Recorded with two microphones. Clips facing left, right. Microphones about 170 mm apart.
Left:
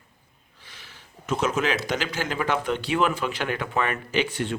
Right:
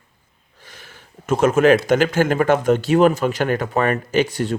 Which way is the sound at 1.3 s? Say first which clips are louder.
Right 10 dB; 50° right (ahead or behind).